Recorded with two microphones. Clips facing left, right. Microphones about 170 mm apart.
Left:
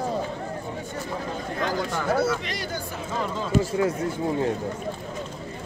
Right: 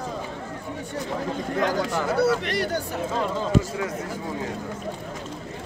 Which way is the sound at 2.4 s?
65° right (ahead or behind).